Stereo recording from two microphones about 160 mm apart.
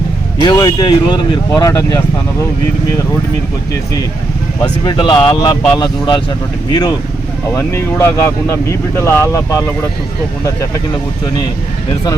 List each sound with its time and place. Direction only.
0.4 s speech: 25° left (ahead or behind)
4.9 s speech: 25° left (ahead or behind)